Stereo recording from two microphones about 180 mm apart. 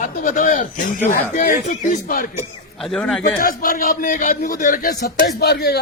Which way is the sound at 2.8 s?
Centre (ahead or behind).